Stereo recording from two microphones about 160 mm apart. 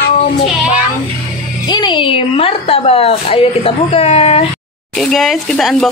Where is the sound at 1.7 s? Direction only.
30° left (ahead or behind).